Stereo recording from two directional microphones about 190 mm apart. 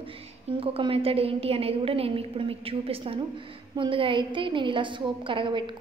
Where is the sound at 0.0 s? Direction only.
30° right (ahead or behind).